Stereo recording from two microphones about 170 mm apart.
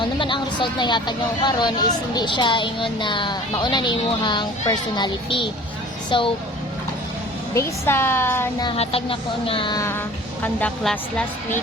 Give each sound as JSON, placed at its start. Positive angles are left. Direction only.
{"t": 0.0, "sound": "speech", "side_deg": 30}
{"t": 7.5, "sound": "speech", "side_deg": 15}
{"t": 8.6, "sound": "speech", "side_deg": 35}